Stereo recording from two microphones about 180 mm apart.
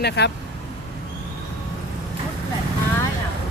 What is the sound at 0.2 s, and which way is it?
Speech, 65° left (ahead or behind).